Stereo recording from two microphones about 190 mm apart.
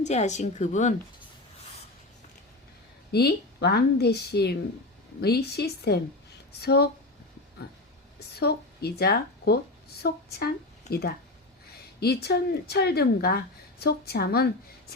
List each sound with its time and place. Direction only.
0.0 s a woman's voice: 35° left (ahead or behind)
3.1 s speech: 55° left (ahead or behind)
8.4 s a woman's voice: 55° left (ahead or behind)